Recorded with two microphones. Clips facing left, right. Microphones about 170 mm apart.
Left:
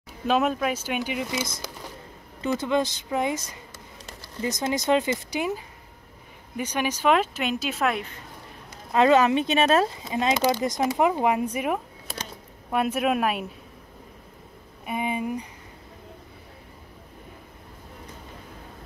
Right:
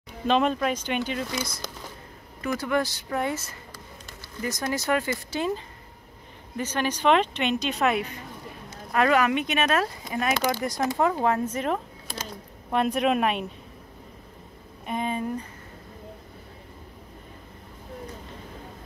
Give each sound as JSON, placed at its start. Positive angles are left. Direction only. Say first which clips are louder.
{"t": 0.3, "sound": "speech", "louder": "even", "side_deg": 5}
{"t": 8.9, "sound": "speech", "louder": "left 3 dB", "side_deg": 25}
{"t": 14.9, "sound": "speech", "louder": "left 1 dB", "side_deg": 10}